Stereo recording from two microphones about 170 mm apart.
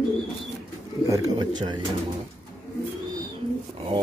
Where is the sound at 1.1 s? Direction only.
20° right (ahead or behind).